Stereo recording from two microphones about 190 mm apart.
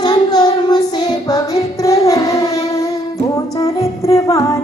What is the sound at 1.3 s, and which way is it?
Child singing, 15° left (ahead or behind).